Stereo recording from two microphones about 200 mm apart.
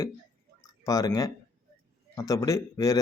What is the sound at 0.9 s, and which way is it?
Speech, 15° left (ahead or behind).